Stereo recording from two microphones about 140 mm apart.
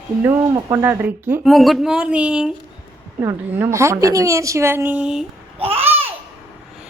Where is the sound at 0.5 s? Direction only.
20° right (ahead or behind).